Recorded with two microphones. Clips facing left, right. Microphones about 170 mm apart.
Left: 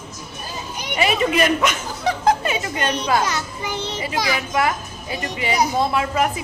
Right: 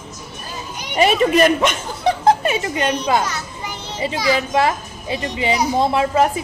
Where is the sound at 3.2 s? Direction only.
80° left.